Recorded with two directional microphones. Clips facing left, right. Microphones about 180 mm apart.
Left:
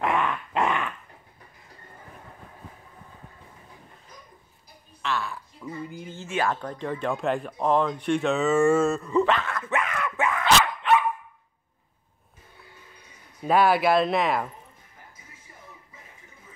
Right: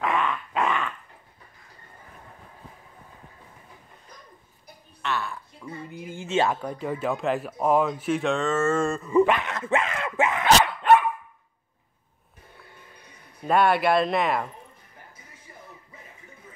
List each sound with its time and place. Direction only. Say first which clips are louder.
0.0 s dog: even; 15° left (ahead or behind)
5.0 s a sound: even; centre (ahead or behind)
6.1 s speech: right 3 dB; 25° right (ahead or behind)
6.5 s speech: right 1 dB; 10° right (ahead or behind)
9.1 s speech: right 2 dB; 10° right (ahead or behind)
10.8 s dog: right 4 dB; 50° right (ahead or behind)
13.4 s speech: left 1 dB; centre (ahead or behind)